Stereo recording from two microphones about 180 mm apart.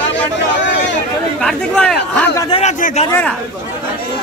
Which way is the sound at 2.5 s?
40° left (ahead or behind).